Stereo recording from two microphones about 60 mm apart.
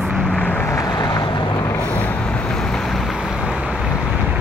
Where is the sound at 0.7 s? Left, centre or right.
Left.